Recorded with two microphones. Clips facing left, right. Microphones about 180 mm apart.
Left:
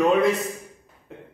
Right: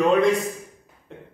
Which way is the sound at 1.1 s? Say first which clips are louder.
Even; centre (ahead or behind).